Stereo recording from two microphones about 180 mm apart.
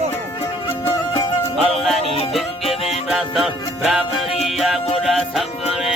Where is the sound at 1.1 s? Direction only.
25° left (ahead or behind).